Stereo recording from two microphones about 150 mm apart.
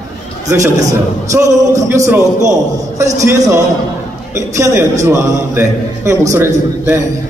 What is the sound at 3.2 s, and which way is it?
A man's voice, 20° right (ahead or behind).